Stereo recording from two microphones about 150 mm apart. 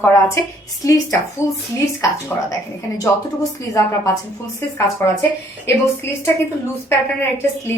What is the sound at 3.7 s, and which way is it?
A woman's voice, 20° left (ahead or behind).